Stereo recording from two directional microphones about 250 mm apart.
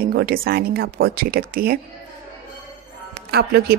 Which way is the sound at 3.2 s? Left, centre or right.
Right.